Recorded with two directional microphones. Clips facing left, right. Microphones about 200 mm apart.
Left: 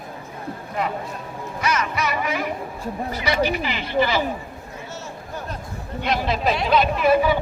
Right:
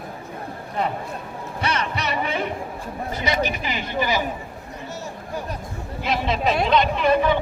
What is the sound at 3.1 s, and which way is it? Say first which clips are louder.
Speech: left 2 dB; 20° right (ahead or behind).